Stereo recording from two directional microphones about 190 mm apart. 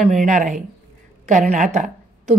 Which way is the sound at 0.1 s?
40° right (ahead or behind).